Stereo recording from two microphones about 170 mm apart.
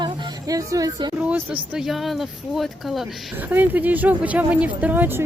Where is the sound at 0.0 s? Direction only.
20° right (ahead or behind).